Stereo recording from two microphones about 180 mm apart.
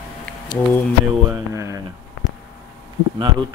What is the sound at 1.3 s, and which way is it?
Speech, 15° right (ahead or behind).